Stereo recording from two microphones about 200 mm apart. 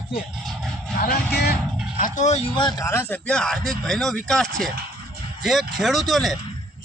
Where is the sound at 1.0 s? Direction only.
50° left (ahead or behind).